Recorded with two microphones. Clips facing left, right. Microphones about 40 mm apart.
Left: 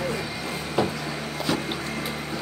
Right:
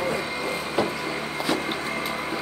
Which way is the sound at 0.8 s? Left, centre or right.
Centre.